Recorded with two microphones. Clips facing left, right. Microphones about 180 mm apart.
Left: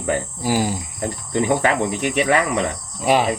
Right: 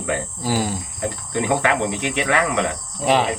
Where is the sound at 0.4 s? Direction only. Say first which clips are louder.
Left 2 dB; 10° left (ahead or behind).